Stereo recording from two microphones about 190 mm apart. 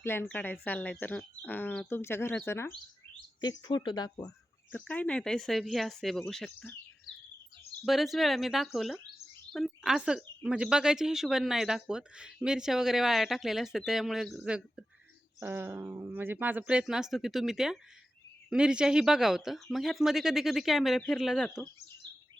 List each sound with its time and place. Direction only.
0.0 s speech: 10° left (ahead or behind)
3.6 s speech: 25° left (ahead or behind)
4.7 s speech: 10° left (ahead or behind)
7.9 s speech: centre (ahead or behind)